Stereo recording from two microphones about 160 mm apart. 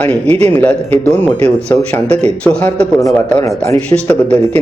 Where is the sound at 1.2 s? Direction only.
40° right (ahead or behind).